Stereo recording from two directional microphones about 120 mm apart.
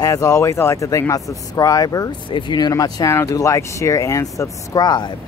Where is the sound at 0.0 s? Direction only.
30° left (ahead or behind).